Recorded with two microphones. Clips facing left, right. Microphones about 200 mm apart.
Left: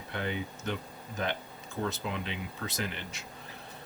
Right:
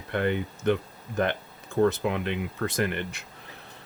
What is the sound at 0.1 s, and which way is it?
Speech, 60° right (ahead or behind).